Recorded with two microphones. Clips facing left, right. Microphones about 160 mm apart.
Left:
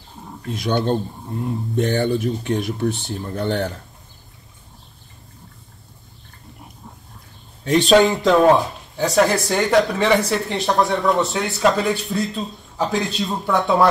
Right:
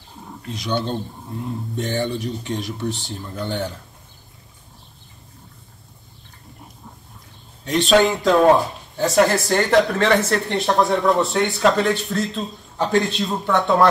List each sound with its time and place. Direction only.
0.5 s speech: 50° left (ahead or behind)
1.8 s speech: 60° left (ahead or behind)
7.6 s speech: centre (ahead or behind)